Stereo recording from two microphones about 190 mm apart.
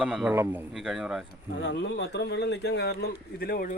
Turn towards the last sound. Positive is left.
turn(degrees=50)  # may be behind; listen again after turning